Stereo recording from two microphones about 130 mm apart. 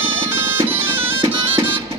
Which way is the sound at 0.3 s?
20° right (ahead or behind).